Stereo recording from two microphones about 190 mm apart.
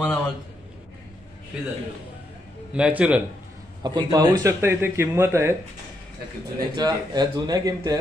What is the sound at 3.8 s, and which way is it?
Speech, 20° right (ahead or behind).